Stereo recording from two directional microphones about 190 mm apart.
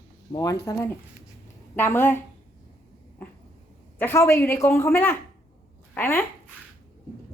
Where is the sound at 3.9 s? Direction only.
10° left (ahead or behind).